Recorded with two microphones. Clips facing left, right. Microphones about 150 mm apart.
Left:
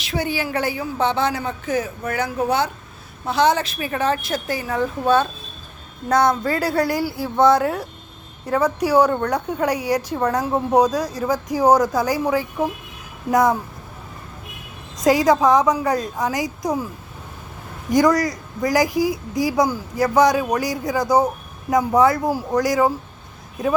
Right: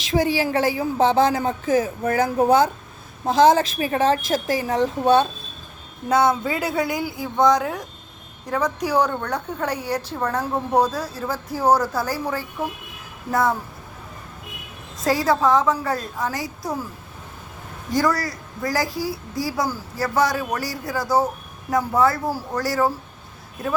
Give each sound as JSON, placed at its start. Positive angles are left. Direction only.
{"t": 0.1, "sound": "a woman's voice", "side_deg": -35}
{"t": 2.2, "sound": "speech", "side_deg": -45}
{"t": 3.5, "sound": "a woman's voice", "side_deg": -35}
{"t": 6.1, "sound": "speech", "side_deg": -5}
{"t": 14.9, "sound": "speech", "side_deg": 20}
{"t": 17.9, "sound": "speech", "side_deg": 20}